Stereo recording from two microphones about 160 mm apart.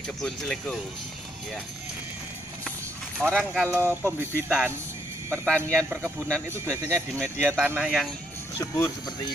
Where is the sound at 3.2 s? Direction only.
10° left (ahead or behind).